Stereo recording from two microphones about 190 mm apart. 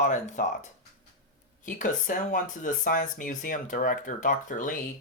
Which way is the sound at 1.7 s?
45° left (ahead or behind).